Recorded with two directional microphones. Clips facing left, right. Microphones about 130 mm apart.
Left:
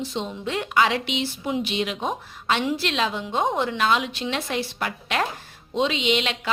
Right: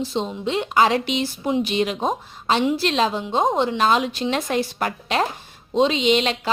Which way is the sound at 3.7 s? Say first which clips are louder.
Right 3 dB; 40° right (ahead or behind).